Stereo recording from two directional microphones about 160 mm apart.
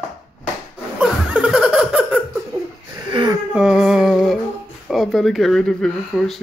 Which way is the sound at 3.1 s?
30° right (ahead or behind).